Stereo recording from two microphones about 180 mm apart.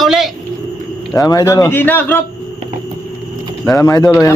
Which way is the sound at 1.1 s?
20° left (ahead or behind).